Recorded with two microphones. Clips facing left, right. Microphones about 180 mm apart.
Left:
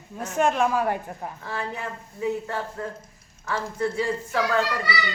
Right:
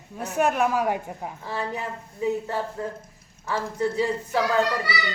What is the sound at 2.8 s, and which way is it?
Speech, 20° right (ahead or behind).